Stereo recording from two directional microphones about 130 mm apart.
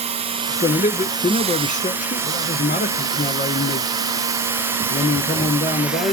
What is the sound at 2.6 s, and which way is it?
Speech, 15° right (ahead or behind).